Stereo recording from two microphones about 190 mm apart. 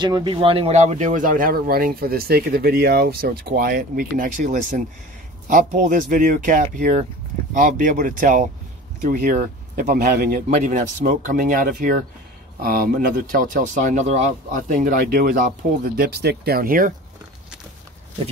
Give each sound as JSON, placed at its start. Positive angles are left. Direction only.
{"t": 0.0, "sound": "speech", "side_deg": -25}